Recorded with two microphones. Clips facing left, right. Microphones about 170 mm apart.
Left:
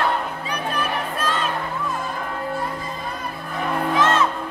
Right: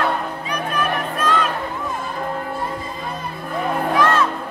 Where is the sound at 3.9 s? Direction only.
20° left (ahead or behind).